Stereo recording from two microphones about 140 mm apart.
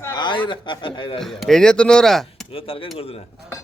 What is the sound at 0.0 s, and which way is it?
A man's voice, 30° left (ahead or behind).